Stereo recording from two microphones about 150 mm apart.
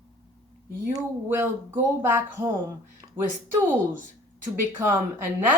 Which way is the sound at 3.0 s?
25° right (ahead or behind).